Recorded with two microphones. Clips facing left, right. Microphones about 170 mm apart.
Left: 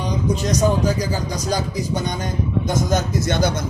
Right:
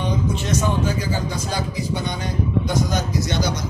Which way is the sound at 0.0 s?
40° left (ahead or behind).